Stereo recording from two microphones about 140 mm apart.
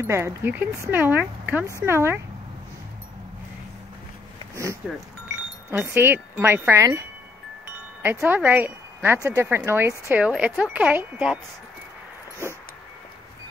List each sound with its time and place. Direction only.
0.0 s speech: 20° right (ahead or behind)
5.3 s speech: 15° right (ahead or behind)
8.0 s speech: 10° right (ahead or behind)